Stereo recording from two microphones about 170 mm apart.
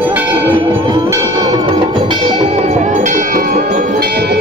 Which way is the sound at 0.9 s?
20° right (ahead or behind).